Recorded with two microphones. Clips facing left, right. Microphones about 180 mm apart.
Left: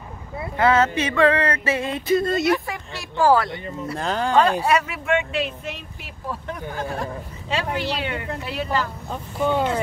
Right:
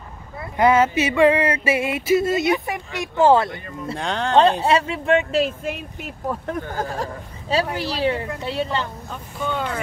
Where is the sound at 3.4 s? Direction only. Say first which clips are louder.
Left 1 dB; 25° left (ahead or behind).